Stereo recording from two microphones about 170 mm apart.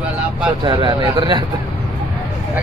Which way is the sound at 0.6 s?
25° right (ahead or behind).